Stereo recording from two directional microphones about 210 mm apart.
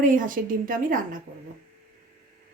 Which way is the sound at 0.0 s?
40° right (ahead or behind).